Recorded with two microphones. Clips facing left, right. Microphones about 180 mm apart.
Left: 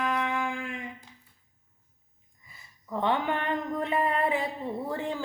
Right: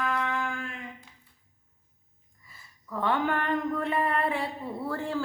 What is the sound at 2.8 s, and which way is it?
Speech, 15° left (ahead or behind).